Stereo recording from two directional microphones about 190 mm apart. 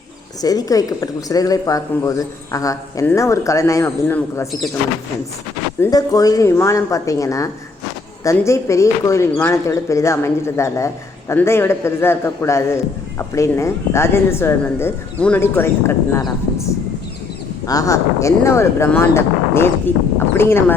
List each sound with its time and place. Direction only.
0.4 s speech: 20° left (ahead or behind)
5.8 s speech: 20° left (ahead or behind)